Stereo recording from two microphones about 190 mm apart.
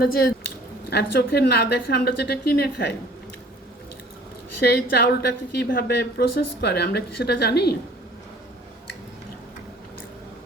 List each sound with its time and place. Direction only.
0.9 s a woman's voice: 55° left (ahead or behind)
4.6 s a woman's voice: 60° left (ahead or behind)